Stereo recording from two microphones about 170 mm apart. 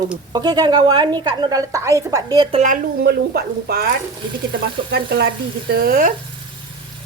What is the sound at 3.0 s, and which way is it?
Speech, 70° right (ahead or behind).